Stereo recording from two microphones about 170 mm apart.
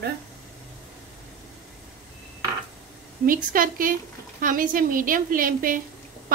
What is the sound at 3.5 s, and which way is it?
A woman's voice, 55° right (ahead or behind).